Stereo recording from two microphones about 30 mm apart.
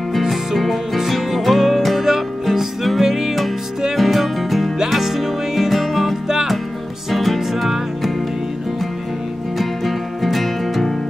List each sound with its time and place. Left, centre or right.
0.6 s music: centre
3.9 s music: centre
9.6 s music: centre